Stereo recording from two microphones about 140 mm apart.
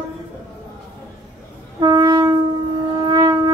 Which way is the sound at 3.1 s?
30° right (ahead or behind).